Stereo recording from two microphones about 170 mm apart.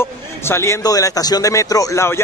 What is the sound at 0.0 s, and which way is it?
A man's voice, 15° left (ahead or behind).